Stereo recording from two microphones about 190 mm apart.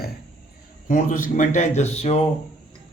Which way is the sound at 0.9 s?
45° left (ahead or behind).